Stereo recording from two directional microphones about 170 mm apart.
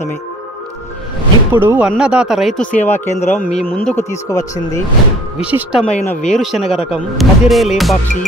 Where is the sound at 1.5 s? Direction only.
10° right (ahead or behind); by 4.8 s 20° left (ahead or behind).